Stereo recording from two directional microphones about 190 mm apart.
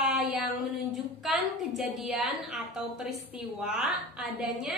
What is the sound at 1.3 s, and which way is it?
A woman's voice, centre (ahead or behind).